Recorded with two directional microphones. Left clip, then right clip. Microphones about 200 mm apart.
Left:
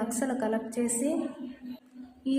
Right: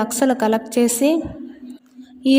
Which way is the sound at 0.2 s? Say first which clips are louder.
Right 14 dB; 40° right (ahead or behind).